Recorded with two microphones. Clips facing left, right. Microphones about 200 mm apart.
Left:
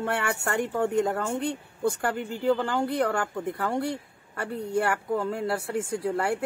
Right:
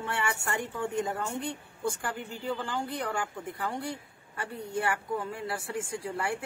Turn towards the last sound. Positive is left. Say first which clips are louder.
# left 6 dB
turn(degrees=60)  # may be behind; listen again after turning